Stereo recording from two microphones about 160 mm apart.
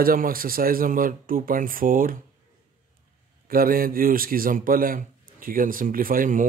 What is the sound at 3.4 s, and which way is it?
A man's voice, 65° right (ahead or behind).